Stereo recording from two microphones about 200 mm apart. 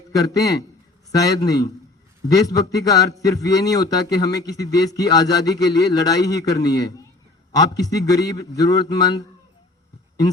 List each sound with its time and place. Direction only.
0.1 s a man's voice: 20° left (ahead or behind)